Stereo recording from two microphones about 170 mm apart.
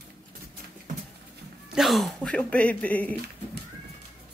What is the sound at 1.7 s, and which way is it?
Speech, centre (ahead or behind).